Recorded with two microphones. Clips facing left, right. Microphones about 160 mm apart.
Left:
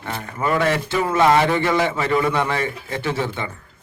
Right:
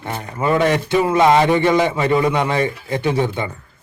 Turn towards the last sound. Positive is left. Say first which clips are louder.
# right 5 dB
turn(degrees=-15)  # may be behind; listen again after turning